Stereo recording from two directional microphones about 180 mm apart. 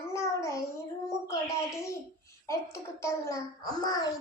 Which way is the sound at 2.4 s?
15° left (ahead or behind).